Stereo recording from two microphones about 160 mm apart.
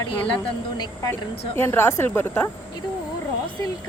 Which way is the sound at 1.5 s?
15° left (ahead or behind).